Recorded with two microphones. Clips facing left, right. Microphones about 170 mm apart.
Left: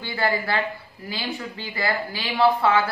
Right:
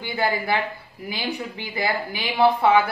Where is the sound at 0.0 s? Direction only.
15° right (ahead or behind).